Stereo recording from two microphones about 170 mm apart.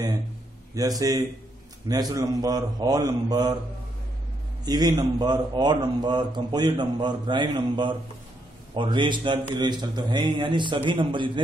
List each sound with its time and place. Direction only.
0.7 s a man's voice: 20° right (ahead or behind)
4.6 s a man's voice: 25° right (ahead or behind)